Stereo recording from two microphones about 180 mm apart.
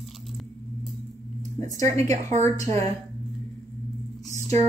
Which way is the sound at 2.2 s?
40° right (ahead or behind).